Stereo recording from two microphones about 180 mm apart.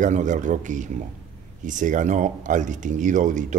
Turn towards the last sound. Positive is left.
turn(degrees=-45)  # may be behind; listen again after turning